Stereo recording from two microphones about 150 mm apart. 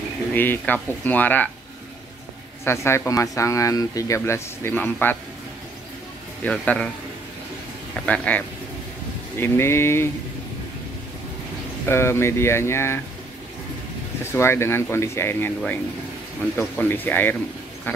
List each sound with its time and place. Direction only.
0.3 s speech: 10° left (ahead or behind)
2.6 s speech: 15° left (ahead or behind)
6.4 s speech: 10° left (ahead or behind)
8.0 s speech: 10° left (ahead or behind)
11.9 s speech: 15° left (ahead or behind)
14.2 s speech: 15° left (ahead or behind)
16.5 s speech: 15° left (ahead or behind)
17.9 s quack: 10° left (ahead or behind)